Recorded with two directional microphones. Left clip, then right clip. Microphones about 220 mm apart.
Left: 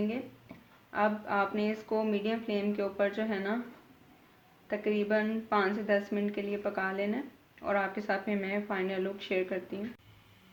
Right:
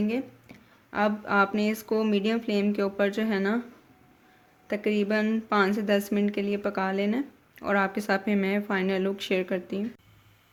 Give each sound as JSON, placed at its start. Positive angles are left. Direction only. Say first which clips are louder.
{"t": 0.9, "sound": "speech", "louder": "right 5 dB", "side_deg": -50}
{"t": 4.7, "sound": "speech", "louder": "right 3 dB", "side_deg": -50}